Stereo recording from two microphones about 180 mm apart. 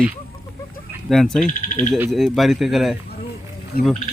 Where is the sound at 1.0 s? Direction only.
Centre (ahead or behind).